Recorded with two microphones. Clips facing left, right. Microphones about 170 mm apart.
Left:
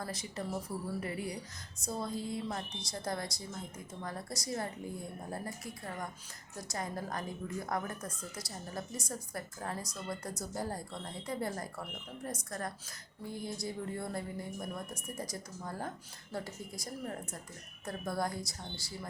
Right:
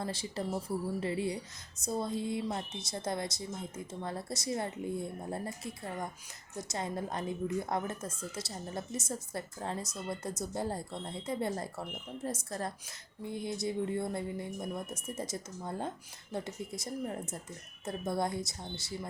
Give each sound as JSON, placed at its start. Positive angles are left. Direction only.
{"t": 0.0, "sound": "a woman's voice", "side_deg": -30}